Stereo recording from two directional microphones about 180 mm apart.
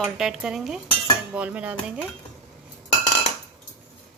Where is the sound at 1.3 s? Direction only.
5° right (ahead or behind).